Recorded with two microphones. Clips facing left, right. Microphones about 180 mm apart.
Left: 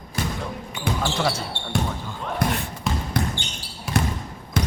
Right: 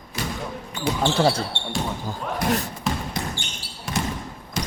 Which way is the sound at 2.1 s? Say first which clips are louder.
Right 1 dB; 40° right (ahead or behind).